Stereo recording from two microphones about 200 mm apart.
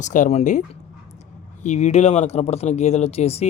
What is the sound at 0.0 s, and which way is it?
Speech, 40° left (ahead or behind).